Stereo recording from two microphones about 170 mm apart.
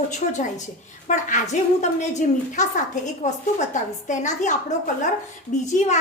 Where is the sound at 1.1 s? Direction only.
45° left (ahead or behind).